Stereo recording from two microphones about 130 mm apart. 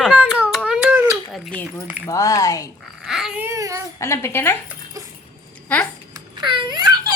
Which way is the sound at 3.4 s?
20° right (ahead or behind).